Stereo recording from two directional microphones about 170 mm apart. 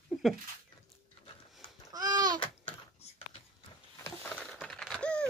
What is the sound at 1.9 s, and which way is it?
Babbling, 25° right (ahead or behind).